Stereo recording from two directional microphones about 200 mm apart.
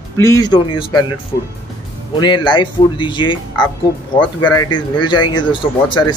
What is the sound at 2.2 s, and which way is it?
Speech, 20° left (ahead or behind).